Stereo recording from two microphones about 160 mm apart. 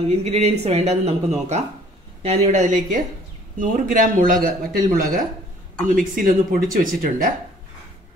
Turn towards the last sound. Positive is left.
turn(degrees=-60)  # may be behind; listen again after turning